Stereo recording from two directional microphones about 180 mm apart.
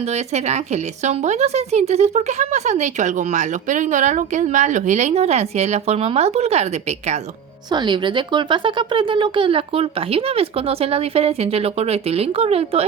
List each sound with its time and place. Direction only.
0.1 s a woman's voice: 40° right (ahead or behind)
7.7 s a woman's voice: 25° right (ahead or behind)